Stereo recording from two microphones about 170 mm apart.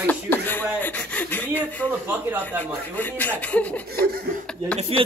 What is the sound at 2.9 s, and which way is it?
Speech, 10° left (ahead or behind).